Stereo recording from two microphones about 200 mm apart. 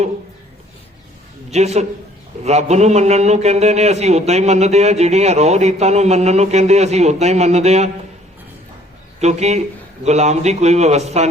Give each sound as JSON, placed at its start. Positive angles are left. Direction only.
{"t": 1.5, "sound": "a man's voice", "side_deg": -35}
{"t": 9.2, "sound": "a man's voice", "side_deg": -35}